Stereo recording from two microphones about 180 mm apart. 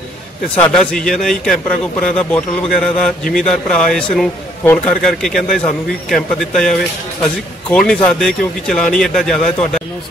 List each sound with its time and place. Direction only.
0.6 s a man's voice: 5° left (ahead or behind)